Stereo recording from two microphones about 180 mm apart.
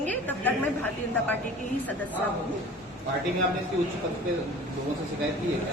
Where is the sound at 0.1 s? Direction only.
10° left (ahead or behind).